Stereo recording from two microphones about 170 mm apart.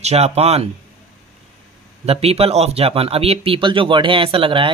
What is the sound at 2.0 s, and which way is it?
Speech, 35° right (ahead or behind).